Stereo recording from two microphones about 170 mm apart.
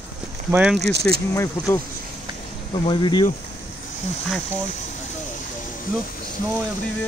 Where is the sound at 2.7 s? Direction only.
30° left (ahead or behind).